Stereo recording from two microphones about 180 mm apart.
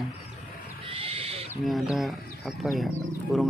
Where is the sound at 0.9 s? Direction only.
30° right (ahead or behind).